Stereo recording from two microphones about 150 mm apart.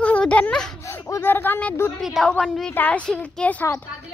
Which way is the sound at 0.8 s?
20° left (ahead or behind).